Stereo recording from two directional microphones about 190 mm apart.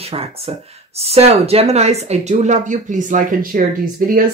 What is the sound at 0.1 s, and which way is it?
Speech, 30° right (ahead or behind).